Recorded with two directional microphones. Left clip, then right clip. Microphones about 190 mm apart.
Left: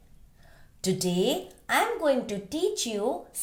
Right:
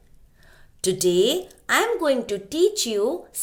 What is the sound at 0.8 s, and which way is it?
A woman's voice, 30° right (ahead or behind).